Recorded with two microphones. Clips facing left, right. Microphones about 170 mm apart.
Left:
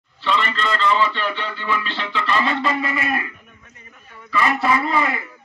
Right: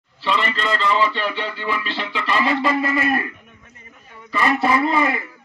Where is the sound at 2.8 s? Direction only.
45° right (ahead or behind).